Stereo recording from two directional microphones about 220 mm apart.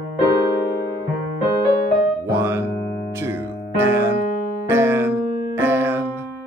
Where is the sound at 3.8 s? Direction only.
10° right (ahead or behind).